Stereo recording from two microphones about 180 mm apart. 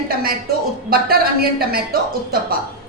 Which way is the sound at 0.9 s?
55° right (ahead or behind).